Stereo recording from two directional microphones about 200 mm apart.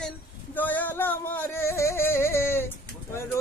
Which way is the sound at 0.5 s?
10° left (ahead or behind).